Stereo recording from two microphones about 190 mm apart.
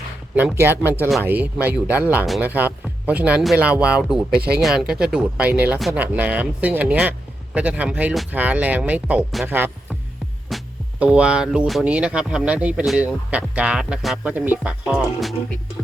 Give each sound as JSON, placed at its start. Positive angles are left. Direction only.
{"t": 0.3, "sound": "speech", "side_deg": -10}
{"t": 4.3, "sound": "speech", "side_deg": -55}
{"t": 4.5, "sound": "speech", "side_deg": 0}
{"t": 10.5, "sound": "music", "side_deg": 0}
{"t": 11.0, "sound": "speech", "side_deg": -5}